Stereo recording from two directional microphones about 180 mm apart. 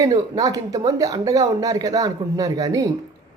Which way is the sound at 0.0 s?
20° right (ahead or behind).